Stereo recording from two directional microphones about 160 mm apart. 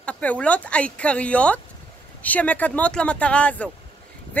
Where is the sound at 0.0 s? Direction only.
10° left (ahead or behind).